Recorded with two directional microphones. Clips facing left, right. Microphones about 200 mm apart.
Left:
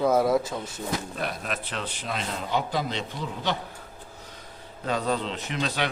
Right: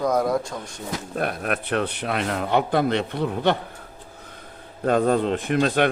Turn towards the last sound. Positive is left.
turn(degrees=-55)  # may be behind; listen again after turning